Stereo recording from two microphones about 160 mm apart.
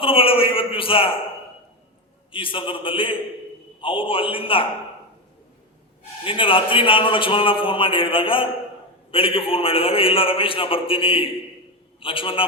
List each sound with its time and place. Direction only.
0.0 s a man's voice: 35° left (ahead or behind)
2.3 s a man's voice: 35° left (ahead or behind)
6.2 s a man's voice: 35° left (ahead or behind)